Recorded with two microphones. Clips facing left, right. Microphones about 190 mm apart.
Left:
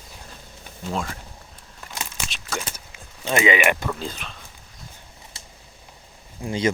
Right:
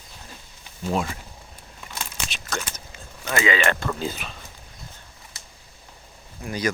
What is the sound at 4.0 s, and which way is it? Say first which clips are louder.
Speech: right 3 dB; 5° right (ahead or behind).